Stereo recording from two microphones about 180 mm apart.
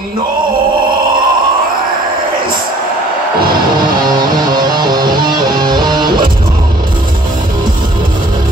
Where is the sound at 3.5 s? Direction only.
25° right (ahead or behind).